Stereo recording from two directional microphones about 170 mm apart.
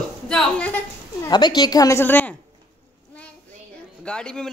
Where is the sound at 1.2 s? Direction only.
25° left (ahead or behind).